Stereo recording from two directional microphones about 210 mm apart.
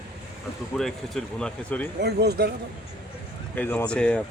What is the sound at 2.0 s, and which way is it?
Speech, 50° right (ahead or behind).